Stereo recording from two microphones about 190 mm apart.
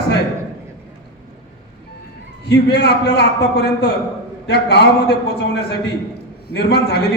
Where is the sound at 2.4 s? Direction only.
60° left (ahead or behind).